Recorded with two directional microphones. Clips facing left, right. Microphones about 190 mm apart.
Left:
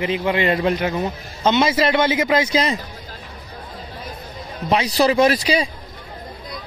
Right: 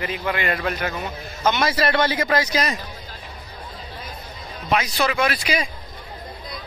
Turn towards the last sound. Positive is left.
turn(degrees=35)  # may be behind; listen again after turning